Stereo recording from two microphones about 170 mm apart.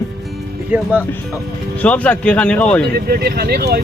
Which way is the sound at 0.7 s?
10° right (ahead or behind).